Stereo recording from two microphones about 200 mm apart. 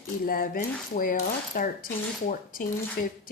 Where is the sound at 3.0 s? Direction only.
50° left (ahead or behind).